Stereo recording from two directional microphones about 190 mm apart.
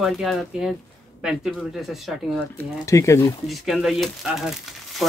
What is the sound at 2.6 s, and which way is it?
Speech, 15° left (ahead or behind).